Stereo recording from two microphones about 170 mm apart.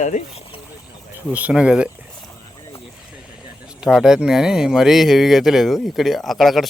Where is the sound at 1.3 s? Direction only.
5° right (ahead or behind).